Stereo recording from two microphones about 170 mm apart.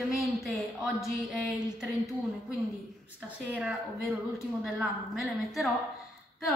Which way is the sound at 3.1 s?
10° right (ahead or behind).